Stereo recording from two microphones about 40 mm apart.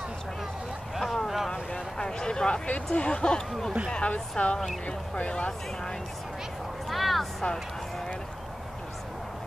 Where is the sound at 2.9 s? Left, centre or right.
Left.